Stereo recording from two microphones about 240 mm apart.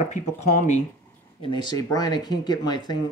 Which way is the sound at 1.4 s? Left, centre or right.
Centre.